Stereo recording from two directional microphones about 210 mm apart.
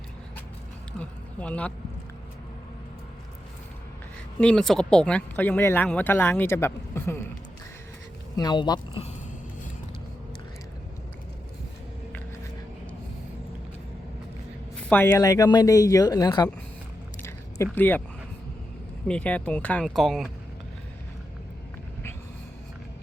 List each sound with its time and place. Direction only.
0.9 s speech: 5° left (ahead or behind)
4.4 s speech: 5° left (ahead or behind)
8.4 s speech: 20° left (ahead or behind)
14.8 s speech: 10° left (ahead or behind)
17.2 s a sound: 10° left (ahead or behind)
19.0 s speech: 5° left (ahead or behind)